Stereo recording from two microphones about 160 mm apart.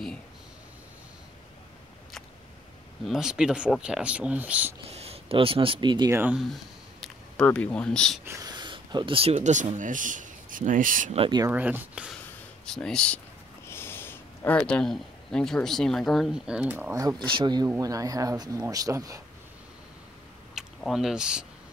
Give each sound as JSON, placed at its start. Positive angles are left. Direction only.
{"t": 3.1, "sound": "speech", "side_deg": -5}
{"t": 4.8, "sound": "speech", "side_deg": -40}
{"t": 6.1, "sound": "speech", "side_deg": -5}
{"t": 8.3, "sound": "speech", "side_deg": -25}
{"t": 11.1, "sound": "speech", "side_deg": -25}
{"t": 11.5, "sound": "speech", "side_deg": -10}
{"t": 12.6, "sound": "speech", "side_deg": 5}
{"t": 17.3, "sound": "speech", "side_deg": -30}
{"t": 20.5, "sound": "speech", "side_deg": 0}